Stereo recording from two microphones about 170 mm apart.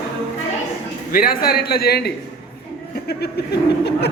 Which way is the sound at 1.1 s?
60° left (ahead or behind).